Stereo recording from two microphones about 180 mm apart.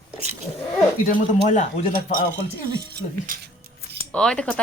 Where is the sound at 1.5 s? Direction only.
40° left (ahead or behind).